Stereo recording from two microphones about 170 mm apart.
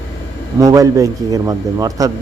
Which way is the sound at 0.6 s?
20° right (ahead or behind).